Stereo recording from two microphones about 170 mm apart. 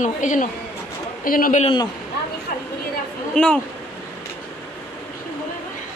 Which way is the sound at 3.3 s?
5° left (ahead or behind).